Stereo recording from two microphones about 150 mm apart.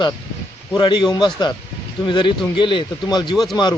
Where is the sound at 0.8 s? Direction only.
30° left (ahead or behind).